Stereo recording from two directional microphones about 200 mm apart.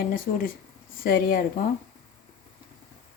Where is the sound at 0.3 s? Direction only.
45° left (ahead or behind).